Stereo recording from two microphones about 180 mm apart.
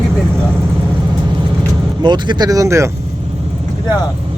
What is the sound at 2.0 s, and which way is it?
Speech, 25° right (ahead or behind).